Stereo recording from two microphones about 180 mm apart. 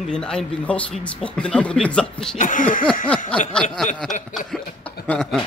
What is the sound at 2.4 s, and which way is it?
Speech, 45° left (ahead or behind).